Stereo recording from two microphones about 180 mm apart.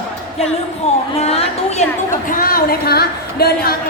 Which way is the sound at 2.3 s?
55° left (ahead or behind).